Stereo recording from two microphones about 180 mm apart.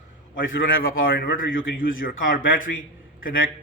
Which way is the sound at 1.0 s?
55° left (ahead or behind).